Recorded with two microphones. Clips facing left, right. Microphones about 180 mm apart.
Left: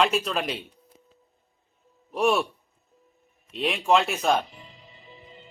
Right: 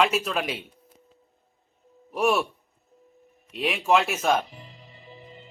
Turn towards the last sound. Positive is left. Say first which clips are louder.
# even
turn(degrees=0)  # may be behind; listen again after turning